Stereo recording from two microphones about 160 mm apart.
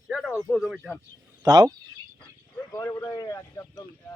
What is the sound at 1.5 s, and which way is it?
Speech, 25° right (ahead or behind).